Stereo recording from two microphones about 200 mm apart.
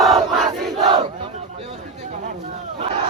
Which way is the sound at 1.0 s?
30° right (ahead or behind).